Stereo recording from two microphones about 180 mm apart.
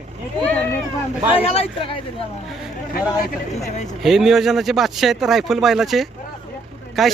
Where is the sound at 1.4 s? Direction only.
30° left (ahead or behind).